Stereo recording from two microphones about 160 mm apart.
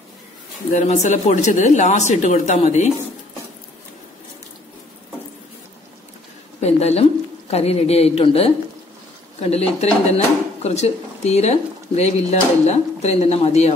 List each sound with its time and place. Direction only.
0.7 s speech: 50° left (ahead or behind)
6.6 s a woman's voice: 40° left (ahead or behind)